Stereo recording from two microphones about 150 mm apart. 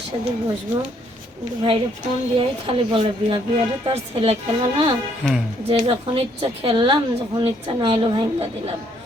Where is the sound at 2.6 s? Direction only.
35° right (ahead or behind).